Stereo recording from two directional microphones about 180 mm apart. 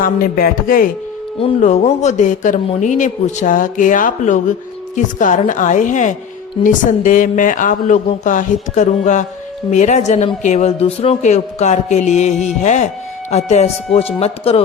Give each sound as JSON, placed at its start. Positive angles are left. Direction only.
{"t": 0.0, "sound": "speech", "side_deg": 55}
{"t": 1.4, "sound": "speech", "side_deg": 35}